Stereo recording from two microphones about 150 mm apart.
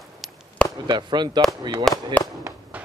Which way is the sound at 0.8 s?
30° right (ahead or behind).